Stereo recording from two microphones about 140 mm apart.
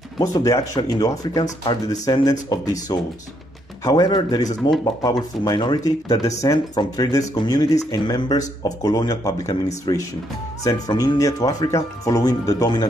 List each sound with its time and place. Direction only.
0.2 s speech: 25° left (ahead or behind)
4.6 s speech: centre (ahead or behind)
4.8 s speech: 30° left (ahead or behind)